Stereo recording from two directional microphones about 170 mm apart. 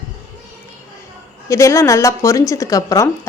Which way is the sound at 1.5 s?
15° left (ahead or behind).